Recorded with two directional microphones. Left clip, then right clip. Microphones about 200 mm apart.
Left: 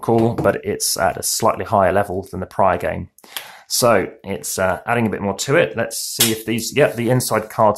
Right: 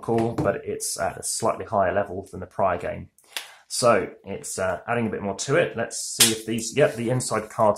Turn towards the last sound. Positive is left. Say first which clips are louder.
# left 6 dB
turn(degrees=25)  # may be behind; listen again after turning